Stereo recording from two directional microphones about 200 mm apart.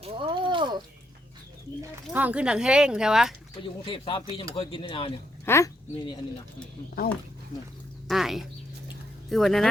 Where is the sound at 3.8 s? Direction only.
25° left (ahead or behind).